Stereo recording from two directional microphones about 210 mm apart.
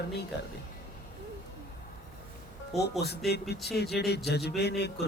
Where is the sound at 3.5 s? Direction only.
50° left (ahead or behind).